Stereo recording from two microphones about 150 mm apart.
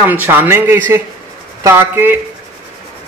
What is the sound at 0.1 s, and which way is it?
Speech, 10° right (ahead or behind).